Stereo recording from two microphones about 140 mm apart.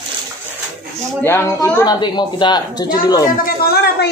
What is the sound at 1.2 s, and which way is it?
A woman's voice, 15° left (ahead or behind).